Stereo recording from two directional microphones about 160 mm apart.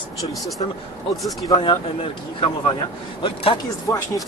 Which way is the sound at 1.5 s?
30° left (ahead or behind).